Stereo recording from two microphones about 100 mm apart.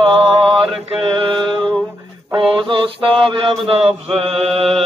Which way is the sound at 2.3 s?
55° right (ahead or behind).